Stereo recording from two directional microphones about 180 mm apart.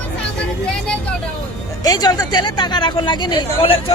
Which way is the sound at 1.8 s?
20° left (ahead or behind).